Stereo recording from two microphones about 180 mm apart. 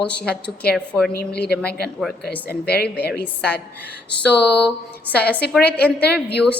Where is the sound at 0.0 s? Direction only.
5° left (ahead or behind).